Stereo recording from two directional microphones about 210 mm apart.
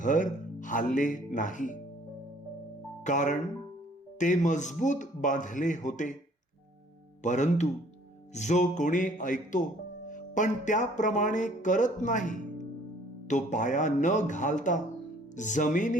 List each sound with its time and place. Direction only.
0.0 s speech: 35° left (ahead or behind)
3.0 s speech: 35° left (ahead or behind)
7.2 s speech: 35° left (ahead or behind)
10.1 s music: 40° left (ahead or behind)
13.2 s speech: 35° left (ahead or behind)